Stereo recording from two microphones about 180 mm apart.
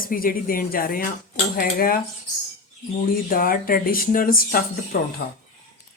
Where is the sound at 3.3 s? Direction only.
50° left (ahead or behind).